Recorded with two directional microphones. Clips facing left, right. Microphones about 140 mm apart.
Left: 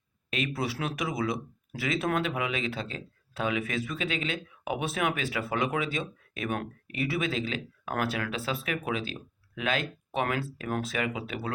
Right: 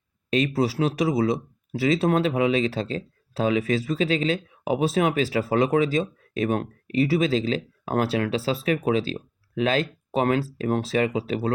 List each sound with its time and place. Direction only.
0.3 s speech: 35° right (ahead or behind)